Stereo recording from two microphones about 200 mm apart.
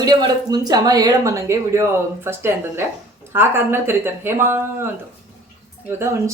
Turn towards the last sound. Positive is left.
turn(degrees=-10)  # may be behind; listen again after turning